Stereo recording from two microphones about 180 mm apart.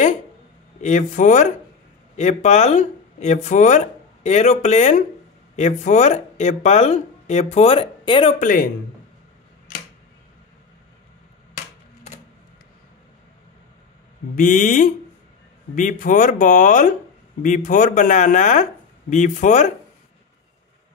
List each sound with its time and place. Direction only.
0.7 s speech: 40° left (ahead or behind)
8.4 s speech: 50° left (ahead or behind)
9.7 s tick-tock: 50° left (ahead or behind)
14.3 s speech: 45° left (ahead or behind)